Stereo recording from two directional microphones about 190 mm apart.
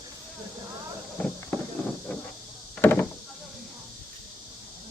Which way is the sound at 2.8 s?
10° left (ahead or behind).